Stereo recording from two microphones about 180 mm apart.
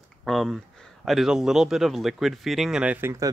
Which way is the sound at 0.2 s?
Centre (ahead or behind).